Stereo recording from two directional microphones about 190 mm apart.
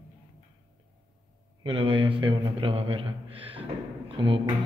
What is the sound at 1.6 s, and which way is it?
A man's voice, 30° right (ahead or behind).